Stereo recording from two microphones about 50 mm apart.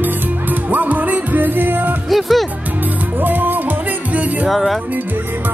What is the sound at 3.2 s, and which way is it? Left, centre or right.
Music, right.